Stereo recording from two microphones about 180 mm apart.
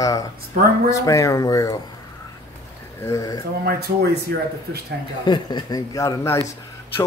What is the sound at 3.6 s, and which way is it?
Speech, 60° right (ahead or behind).